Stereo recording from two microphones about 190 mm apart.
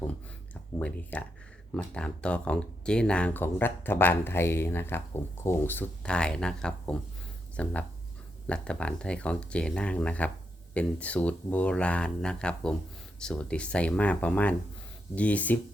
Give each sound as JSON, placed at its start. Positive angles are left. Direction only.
{"t": 0.8, "sound": "speech", "side_deg": 5}